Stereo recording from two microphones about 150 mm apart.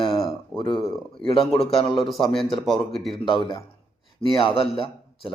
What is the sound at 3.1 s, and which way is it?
Speech, 30° left (ahead or behind).